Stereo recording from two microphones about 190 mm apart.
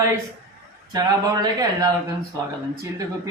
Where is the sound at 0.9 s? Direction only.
20° right (ahead or behind).